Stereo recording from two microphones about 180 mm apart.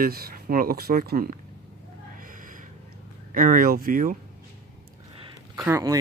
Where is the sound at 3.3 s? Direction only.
50° right (ahead or behind).